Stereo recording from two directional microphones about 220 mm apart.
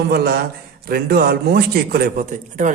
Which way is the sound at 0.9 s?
45° right (ahead or behind).